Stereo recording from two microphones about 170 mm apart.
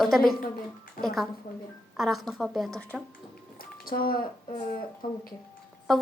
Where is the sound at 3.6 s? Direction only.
60° left (ahead or behind).